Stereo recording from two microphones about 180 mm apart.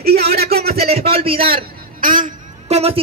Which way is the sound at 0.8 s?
35° right (ahead or behind).